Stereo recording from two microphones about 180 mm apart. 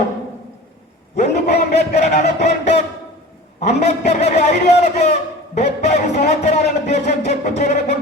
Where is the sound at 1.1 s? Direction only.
40° left (ahead or behind).